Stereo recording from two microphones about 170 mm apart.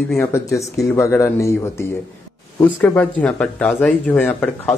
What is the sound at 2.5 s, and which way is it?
Speech, 10° left (ahead or behind).